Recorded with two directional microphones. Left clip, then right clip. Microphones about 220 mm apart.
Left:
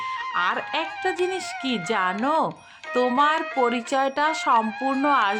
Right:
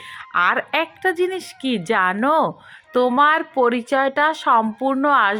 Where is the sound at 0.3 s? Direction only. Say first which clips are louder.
Right 8 dB; 20° right (ahead or behind).